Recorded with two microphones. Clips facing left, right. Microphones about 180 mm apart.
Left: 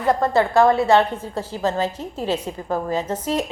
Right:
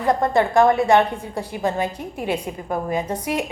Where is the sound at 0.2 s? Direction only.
15° right (ahead or behind).